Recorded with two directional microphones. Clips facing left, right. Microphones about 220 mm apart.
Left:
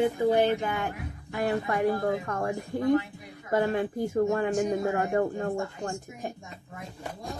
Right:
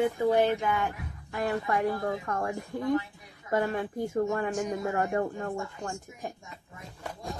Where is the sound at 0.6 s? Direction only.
35° left (ahead or behind).